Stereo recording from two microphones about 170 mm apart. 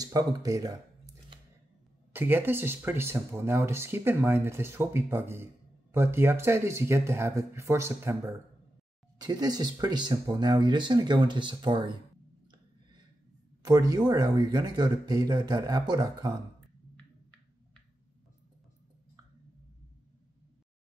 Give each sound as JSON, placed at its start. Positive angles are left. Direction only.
{"t": 0.0, "sound": "a sound", "side_deg": -20}
{"t": 2.1, "sound": "speech", "side_deg": -10}
{"t": 13.7, "sound": "speech", "side_deg": -25}